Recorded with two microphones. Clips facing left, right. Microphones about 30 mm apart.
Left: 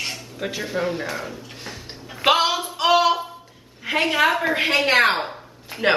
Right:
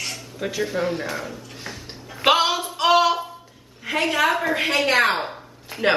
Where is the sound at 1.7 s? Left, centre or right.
Centre.